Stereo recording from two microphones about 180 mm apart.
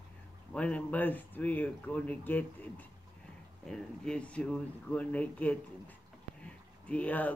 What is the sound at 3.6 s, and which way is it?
Speech, 5° left (ahead or behind).